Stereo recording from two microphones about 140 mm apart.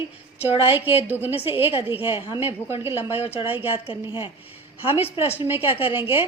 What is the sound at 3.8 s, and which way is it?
Speech, 40° left (ahead or behind).